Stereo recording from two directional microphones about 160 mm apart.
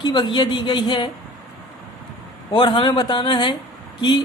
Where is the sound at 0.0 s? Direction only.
30° left (ahead or behind).